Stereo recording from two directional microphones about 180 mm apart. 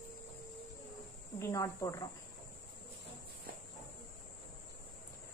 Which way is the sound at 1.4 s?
20° left (ahead or behind).